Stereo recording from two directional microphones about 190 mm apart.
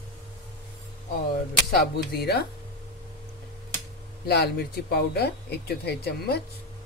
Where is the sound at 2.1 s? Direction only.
55° left (ahead or behind).